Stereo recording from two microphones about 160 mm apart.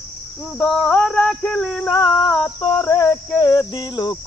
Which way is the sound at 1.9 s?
25° left (ahead or behind).